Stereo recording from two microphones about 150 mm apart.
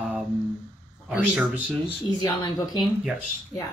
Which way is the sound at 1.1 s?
10° right (ahead or behind).